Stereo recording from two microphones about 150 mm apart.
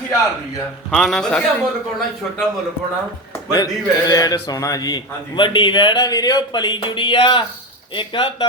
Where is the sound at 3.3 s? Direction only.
25° left (ahead or behind).